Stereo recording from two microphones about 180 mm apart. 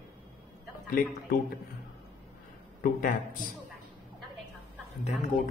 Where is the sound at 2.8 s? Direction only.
50° left (ahead or behind).